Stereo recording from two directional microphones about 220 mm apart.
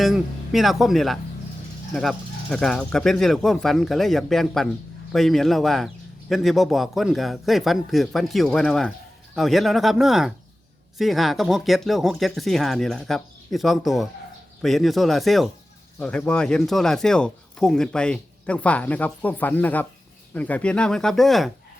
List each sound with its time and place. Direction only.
0.0 s speech: centre (ahead or behind)